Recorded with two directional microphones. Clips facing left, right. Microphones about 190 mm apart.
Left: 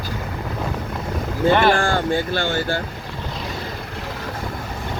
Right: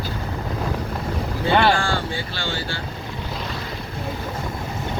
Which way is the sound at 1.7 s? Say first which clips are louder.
Left 5 dB; 55° left (ahead or behind).